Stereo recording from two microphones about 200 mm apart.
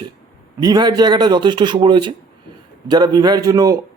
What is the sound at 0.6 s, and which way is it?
A man's voice, 20° right (ahead or behind).